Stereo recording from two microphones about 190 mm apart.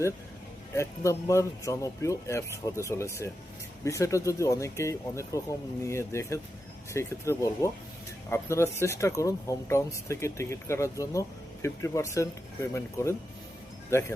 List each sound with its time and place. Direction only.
0.8 s speech: 15° left (ahead or behind)